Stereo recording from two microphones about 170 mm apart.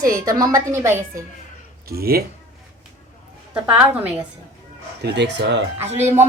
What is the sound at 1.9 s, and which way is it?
Speech, 65° right (ahead or behind).